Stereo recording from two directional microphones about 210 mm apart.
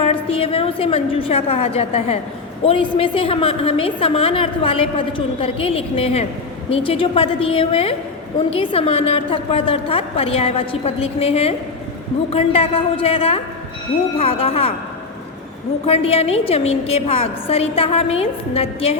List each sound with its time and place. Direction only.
0.0 s a woman's voice: 25° left (ahead or behind)
15.9 s a woman's voice: 30° left (ahead or behind)